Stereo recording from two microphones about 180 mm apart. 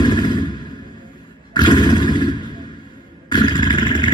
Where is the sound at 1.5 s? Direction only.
25° left (ahead or behind).